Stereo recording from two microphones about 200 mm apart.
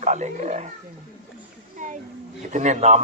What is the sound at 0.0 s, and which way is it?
Speech, 35° right (ahead or behind).